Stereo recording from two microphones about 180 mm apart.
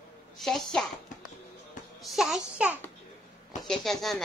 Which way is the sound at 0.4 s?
Centre (ahead or behind).